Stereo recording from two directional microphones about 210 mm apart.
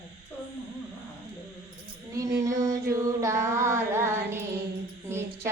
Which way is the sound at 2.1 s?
15° right (ahead or behind).